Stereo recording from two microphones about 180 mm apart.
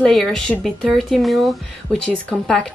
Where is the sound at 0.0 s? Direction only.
5° left (ahead or behind).